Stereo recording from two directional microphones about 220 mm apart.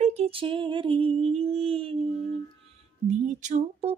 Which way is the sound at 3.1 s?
35° right (ahead or behind).